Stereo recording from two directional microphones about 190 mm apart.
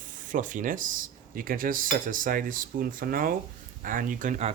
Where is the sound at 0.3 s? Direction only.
40° right (ahead or behind).